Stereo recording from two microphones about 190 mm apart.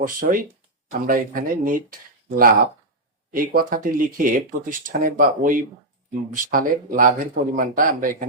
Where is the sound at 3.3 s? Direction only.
50° right (ahead or behind).